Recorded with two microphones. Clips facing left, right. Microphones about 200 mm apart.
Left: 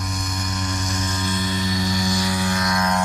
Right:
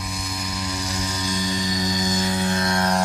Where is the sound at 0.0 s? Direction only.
5° right (ahead or behind).